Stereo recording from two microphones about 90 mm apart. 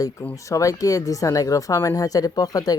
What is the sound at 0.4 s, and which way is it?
Speech, 40° left (ahead or behind).